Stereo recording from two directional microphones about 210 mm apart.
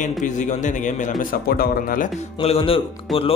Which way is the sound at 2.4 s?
25° left (ahead or behind).